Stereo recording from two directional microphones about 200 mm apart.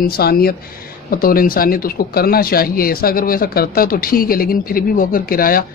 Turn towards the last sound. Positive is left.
turn(degrees=45)  # may be behind; listen again after turning